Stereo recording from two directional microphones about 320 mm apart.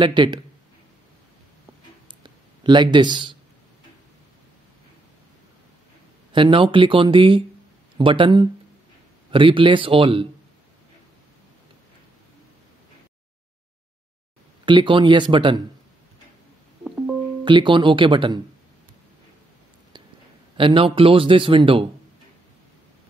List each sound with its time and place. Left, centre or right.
0.0 s speech: centre
2.0 s a sound: centre
6.3 s speech: centre
14.6 s speech: centre
16.8 s music: centre
17.5 s speech: centre
20.5 s speech: centre